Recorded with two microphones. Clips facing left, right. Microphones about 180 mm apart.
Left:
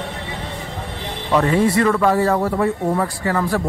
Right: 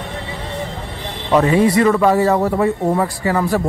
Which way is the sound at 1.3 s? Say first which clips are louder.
Right 3 dB; 15° right (ahead or behind).